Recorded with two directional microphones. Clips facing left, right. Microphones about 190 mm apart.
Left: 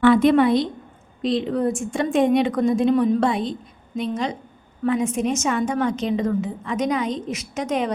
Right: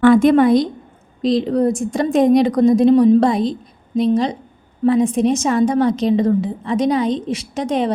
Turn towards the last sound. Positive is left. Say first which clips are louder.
# right 4 dB
turn(degrees=-30)  # may be behind; listen again after turning